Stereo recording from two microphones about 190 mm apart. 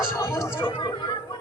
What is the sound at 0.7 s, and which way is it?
Speech, 25° left (ahead or behind).